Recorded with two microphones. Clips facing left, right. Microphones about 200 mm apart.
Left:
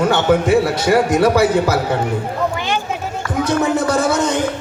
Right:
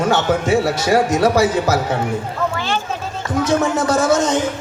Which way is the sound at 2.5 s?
15° left (ahead or behind).